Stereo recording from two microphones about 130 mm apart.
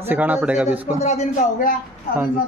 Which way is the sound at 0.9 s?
60° left (ahead or behind).